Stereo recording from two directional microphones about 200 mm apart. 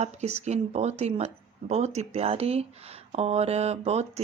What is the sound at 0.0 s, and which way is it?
Speech, 30° right (ahead or behind).